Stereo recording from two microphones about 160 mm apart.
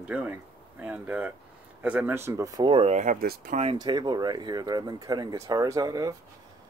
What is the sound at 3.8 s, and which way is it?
Speech, 25° right (ahead or behind).